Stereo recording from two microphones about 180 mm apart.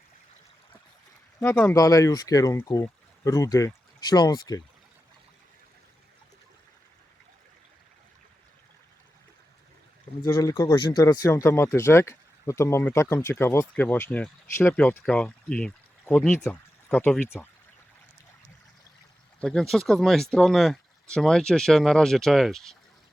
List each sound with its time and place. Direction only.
1.5 s speech: 5° left (ahead or behind)
1.7 s speech: 20° left (ahead or behind)
10.2 s speech: 20° left (ahead or behind)
19.4 s speech: 5° left (ahead or behind)